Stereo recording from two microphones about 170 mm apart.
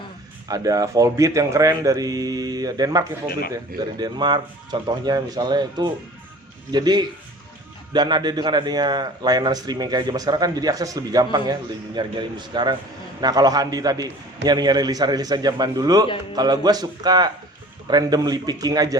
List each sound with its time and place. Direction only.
0.4 s a man's voice: 20° right (ahead or behind)